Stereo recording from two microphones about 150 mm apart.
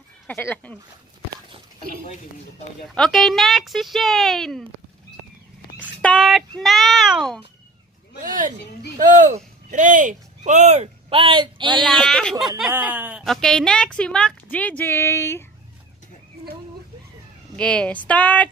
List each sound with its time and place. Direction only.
0.3 s a woman's voice: 10° left (ahead or behind)
2.8 s speech: centre (ahead or behind)
6.1 s speech: centre (ahead or behind)
8.2 s speech: 65° right (ahead or behind); by 11.8 s 30° right (ahead or behind)
11.8 s speech: 5° left (ahead or behind)
12.7 s speech: 15° right (ahead or behind)
13.2 s a woman's voice: 5° left (ahead or behind)
17.6 s a woman's voice: 5° left (ahead or behind)